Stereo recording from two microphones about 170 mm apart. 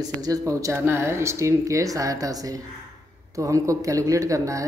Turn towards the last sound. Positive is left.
turn(degrees=-20)  # may be behind; listen again after turning